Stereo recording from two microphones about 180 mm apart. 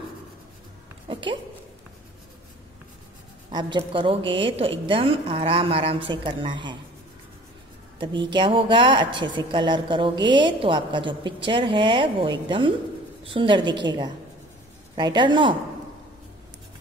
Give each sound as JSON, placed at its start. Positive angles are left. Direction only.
{"t": 1.0, "sound": "speech", "side_deg": -25}
{"t": 3.5, "sound": "a woman's voice", "side_deg": -25}
{"t": 8.0, "sound": "a woman's voice", "side_deg": -25}